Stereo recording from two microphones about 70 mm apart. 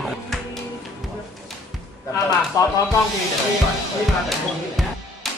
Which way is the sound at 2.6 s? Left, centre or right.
Left.